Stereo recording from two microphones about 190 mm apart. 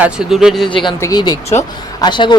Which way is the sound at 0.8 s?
20° left (ahead or behind).